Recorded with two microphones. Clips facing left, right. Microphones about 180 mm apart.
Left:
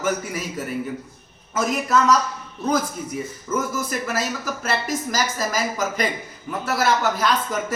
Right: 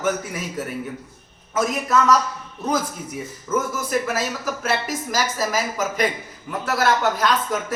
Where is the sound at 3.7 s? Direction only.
Centre (ahead or behind).